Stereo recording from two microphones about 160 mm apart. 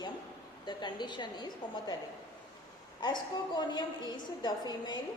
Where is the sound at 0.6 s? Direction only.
30° left (ahead or behind).